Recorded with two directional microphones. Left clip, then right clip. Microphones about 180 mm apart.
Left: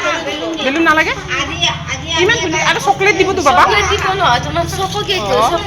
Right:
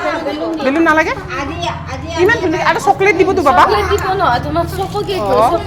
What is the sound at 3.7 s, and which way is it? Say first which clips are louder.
Speech: left 1 dB; 75° right (ahead or behind).